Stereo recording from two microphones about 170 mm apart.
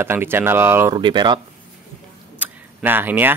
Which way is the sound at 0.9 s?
25° right (ahead or behind).